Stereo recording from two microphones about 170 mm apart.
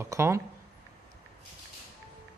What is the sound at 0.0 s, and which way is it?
Speech, 15° right (ahead or behind).